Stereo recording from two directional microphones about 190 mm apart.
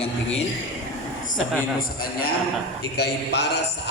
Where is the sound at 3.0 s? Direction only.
65° left (ahead or behind).